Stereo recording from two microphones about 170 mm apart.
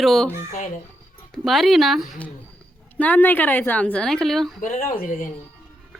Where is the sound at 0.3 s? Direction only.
50° left (ahead or behind).